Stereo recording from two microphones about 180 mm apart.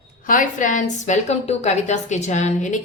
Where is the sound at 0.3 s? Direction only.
45° left (ahead or behind).